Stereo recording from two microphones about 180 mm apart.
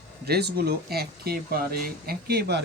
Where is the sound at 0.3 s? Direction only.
65° right (ahead or behind).